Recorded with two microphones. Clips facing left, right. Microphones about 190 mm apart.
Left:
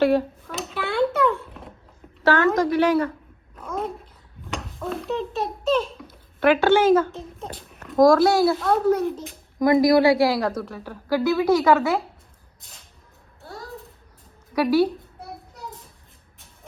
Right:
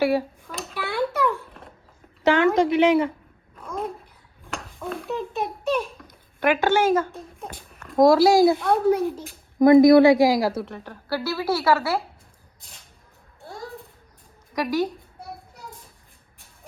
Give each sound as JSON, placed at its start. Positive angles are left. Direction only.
{"t": 0.0, "sound": "a woman's voice", "side_deg": -10}
{"t": 0.4, "sound": "a sound", "side_deg": 0}
{"t": 2.2, "sound": "a woman's voice", "side_deg": -20}
{"t": 3.5, "sound": "a sound", "side_deg": 0}
{"t": 6.4, "sound": "a woman's voice", "side_deg": -10}
{"t": 7.7, "sound": "a sound", "side_deg": 0}
{"t": 8.4, "sound": "a woman's voice", "side_deg": -15}
{"t": 8.7, "sound": "a woman's voice", "side_deg": 0}
{"t": 9.6, "sound": "a woman's voice", "side_deg": -25}
{"t": 11.1, "sound": "speech", "side_deg": 15}
{"t": 11.3, "sound": "a woman's voice", "side_deg": -5}
{"t": 14.5, "sound": "speech", "side_deg": 10}